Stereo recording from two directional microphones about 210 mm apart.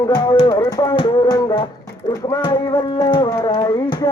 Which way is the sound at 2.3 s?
25° left (ahead or behind).